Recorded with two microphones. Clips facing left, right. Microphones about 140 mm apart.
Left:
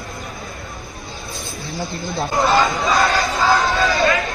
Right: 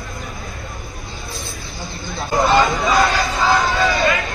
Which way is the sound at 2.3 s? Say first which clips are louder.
Right 2 dB; centre (ahead or behind).